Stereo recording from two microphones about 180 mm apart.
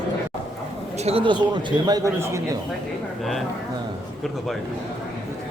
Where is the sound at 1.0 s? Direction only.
35° right (ahead or behind); by 2.4 s 15° right (ahead or behind).